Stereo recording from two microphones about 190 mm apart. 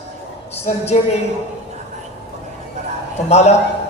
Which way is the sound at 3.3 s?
35° left (ahead or behind).